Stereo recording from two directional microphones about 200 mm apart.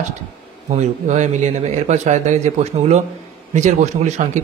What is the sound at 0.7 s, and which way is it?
A man's voice, 35° right (ahead or behind).